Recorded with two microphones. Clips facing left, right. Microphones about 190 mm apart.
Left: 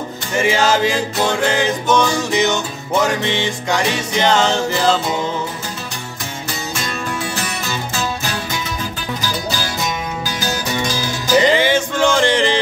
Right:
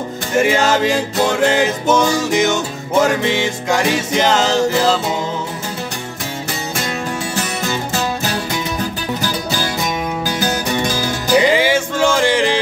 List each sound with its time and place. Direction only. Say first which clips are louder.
0.4 s music: right 1 dB; centre (ahead or behind)
9.2 s music: right 1 dB; 55° right (ahead or behind)
11.3 s music: even; 10° right (ahead or behind)